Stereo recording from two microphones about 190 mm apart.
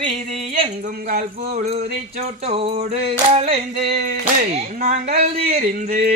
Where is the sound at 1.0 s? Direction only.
45° right (ahead or behind).